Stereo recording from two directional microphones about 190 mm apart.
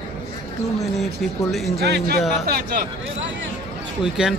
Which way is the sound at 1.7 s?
60° right (ahead or behind).